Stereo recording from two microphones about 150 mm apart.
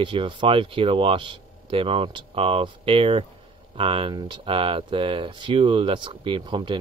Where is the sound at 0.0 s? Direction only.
35° right (ahead or behind).